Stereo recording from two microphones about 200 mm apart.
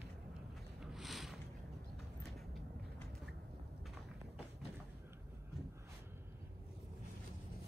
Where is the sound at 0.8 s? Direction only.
Centre (ahead or behind).